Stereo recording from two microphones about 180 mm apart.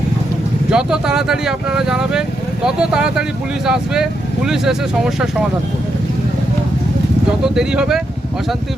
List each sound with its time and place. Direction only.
0.7 s speech: 5° right (ahead or behind)
7.4 s speech: 5° right (ahead or behind)